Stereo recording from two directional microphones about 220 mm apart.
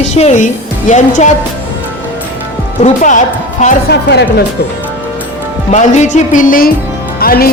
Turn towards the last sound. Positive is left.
turn(degrees=45)  # may be behind; listen again after turning